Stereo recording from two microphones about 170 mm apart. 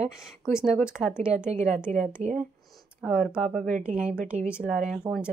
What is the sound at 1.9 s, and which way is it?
Speech, 45° right (ahead or behind).